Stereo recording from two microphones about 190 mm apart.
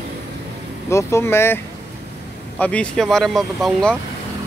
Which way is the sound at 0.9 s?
15° left (ahead or behind).